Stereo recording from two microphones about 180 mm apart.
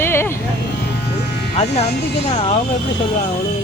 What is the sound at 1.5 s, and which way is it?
Speech, 35° left (ahead or behind).